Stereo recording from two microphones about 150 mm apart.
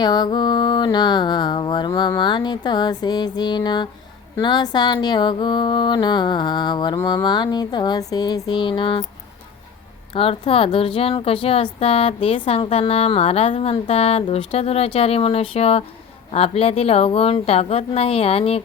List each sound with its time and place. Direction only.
0.0 s mantra: 30° left (ahead or behind)
10.1 s a woman's voice: 35° left (ahead or behind)